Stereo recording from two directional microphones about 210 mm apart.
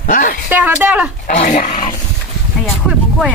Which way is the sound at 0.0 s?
40° left (ahead or behind).